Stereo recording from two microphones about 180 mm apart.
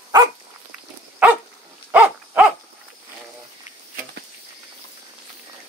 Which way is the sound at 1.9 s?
5° right (ahead or behind).